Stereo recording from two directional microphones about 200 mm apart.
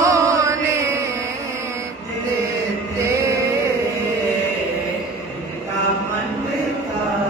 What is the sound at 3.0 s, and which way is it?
Music, 15° right (ahead or behind).